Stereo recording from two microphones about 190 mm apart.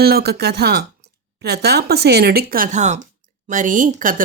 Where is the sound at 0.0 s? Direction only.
55° right (ahead or behind).